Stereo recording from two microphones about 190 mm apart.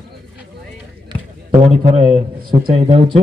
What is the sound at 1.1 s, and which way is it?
Basketball bounce, 25° right (ahead or behind).